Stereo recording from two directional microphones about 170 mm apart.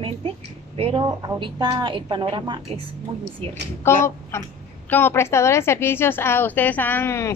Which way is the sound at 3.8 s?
15° left (ahead or behind).